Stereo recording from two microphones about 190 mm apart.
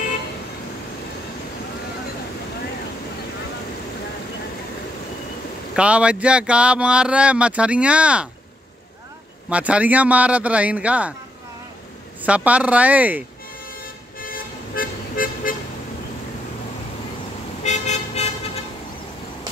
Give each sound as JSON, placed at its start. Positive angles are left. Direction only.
{"t": 5.8, "sound": "speech", "side_deg": -5}
{"t": 9.5, "sound": "a man's voice", "side_deg": -5}
{"t": 12.2, "sound": "a man's voice", "side_deg": -5}
{"t": 14.2, "sound": "toot", "side_deg": 50}
{"t": 17.6, "sound": "toot", "side_deg": 35}